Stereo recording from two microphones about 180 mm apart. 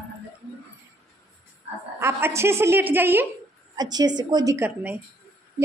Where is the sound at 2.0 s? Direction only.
15° right (ahead or behind).